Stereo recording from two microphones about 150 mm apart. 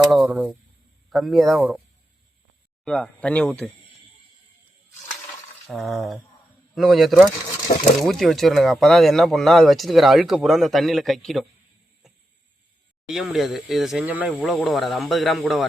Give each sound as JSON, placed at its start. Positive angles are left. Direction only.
{"t": 0.1, "sound": "speech", "side_deg": 0}
{"t": 2.8, "sound": "speech", "side_deg": 5}
{"t": 5.6, "sound": "speech", "side_deg": 0}
{"t": 7.7, "sound": "speech", "side_deg": 45}
{"t": 8.0, "sound": "speech", "side_deg": 0}
{"t": 13.1, "sound": "speech", "side_deg": -5}